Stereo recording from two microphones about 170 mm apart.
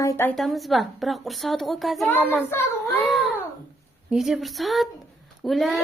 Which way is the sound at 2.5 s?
15° left (ahead or behind).